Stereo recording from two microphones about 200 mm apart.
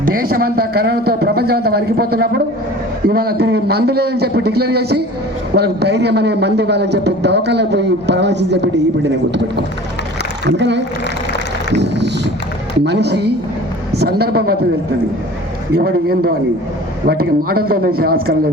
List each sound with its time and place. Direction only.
0.0 s a man's voice: 45° right (ahead or behind)
11.7 s a sound: 60° right (ahead or behind)
12.8 s a man's voice: 55° right (ahead or behind)
15.8 s speech: 50° right (ahead or behind)